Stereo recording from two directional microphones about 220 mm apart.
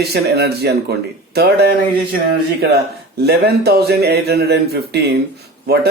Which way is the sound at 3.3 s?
45° right (ahead or behind).